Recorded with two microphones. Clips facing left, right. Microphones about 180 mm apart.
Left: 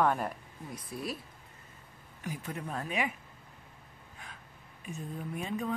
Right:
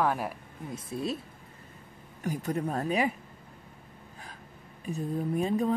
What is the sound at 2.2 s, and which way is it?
Speech, 40° right (ahead or behind).